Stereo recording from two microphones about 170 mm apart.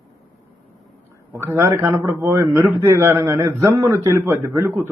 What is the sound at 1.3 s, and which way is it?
A man's voice, 15° right (ahead or behind).